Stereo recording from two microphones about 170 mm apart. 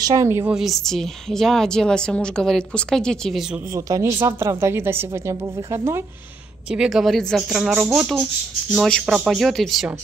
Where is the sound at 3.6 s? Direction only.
20° right (ahead or behind); by 9.9 s centre (ahead or behind).